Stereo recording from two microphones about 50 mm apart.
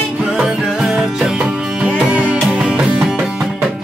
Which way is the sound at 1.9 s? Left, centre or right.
Right.